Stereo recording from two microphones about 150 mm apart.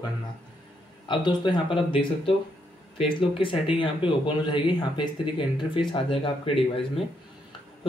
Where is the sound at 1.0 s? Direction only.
30° left (ahead or behind).